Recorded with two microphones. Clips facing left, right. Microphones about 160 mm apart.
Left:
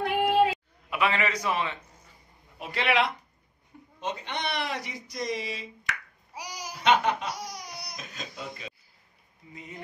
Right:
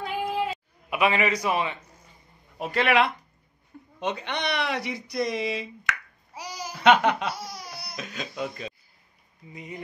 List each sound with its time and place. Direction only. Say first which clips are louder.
0.0 s a sound: left 5 dB; 65° left (ahead or behind)
0.8 s a man's voice: right 4 dB; 15° right (ahead or behind)
2.6 s speech: right 4 dB; 45° right (ahead or behind)
4.0 s speech: right 3 dB; 70° right (ahead or behind)
6.3 s babbling: right 3 dB; 15° left (ahead or behind)
6.8 s speech: right 4 dB; 70° right (ahead or behind)
7.2 s laughter: right 3 dB; 15° left (ahead or behind)
7.9 s speech: right 6 dB; 75° right (ahead or behind)
9.5 s a man's voice: right 5 dB; 15° right (ahead or behind)